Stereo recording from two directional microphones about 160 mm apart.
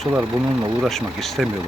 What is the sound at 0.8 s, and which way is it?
Speech, centre (ahead or behind).